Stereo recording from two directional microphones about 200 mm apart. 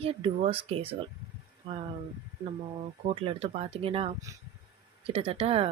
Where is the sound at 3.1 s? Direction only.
25° right (ahead or behind).